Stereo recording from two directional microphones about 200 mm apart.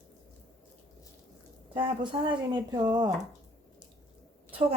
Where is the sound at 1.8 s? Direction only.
25° right (ahead or behind).